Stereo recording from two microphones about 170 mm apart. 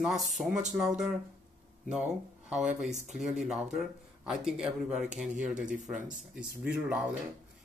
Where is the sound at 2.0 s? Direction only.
40° right (ahead or behind).